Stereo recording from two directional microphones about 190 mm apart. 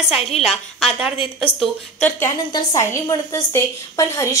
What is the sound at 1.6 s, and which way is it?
A woman's voice, 10° left (ahead or behind).